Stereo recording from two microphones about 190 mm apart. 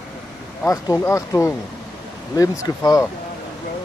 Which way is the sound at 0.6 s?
15° left (ahead or behind).